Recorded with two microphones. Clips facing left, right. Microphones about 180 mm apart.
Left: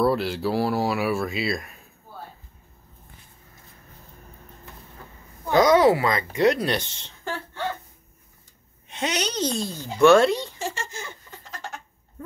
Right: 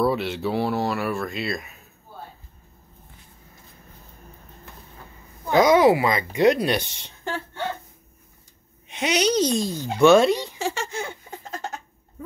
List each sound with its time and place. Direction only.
0.0 s speech: centre (ahead or behind)
5.6 s speech: 10° right (ahead or behind)
8.8 s speech: 15° right (ahead or behind)
10.6 s a sound: 70° right (ahead or behind); by 11.7 s 50° right (ahead or behind)